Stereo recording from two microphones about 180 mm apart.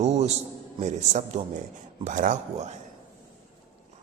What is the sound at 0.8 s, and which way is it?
Mantra, 40° right (ahead or behind).